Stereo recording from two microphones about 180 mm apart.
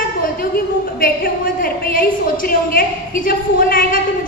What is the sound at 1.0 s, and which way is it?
A woman's voice, 50° left (ahead or behind).